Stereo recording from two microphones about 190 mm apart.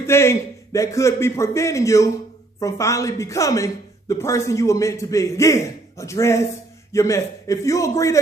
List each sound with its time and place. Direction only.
0.0 s speech: 15° left (ahead or behind)